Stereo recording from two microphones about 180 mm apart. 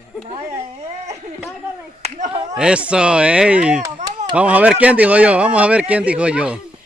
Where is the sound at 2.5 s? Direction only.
5° right (ahead or behind).